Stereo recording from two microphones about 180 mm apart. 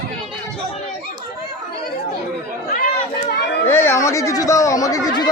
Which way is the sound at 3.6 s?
15° left (ahead or behind).